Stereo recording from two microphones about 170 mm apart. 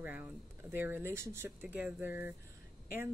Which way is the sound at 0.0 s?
10° right (ahead or behind).